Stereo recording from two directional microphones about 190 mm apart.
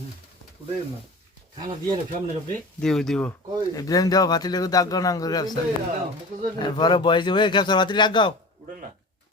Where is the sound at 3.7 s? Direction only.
20° left (ahead or behind).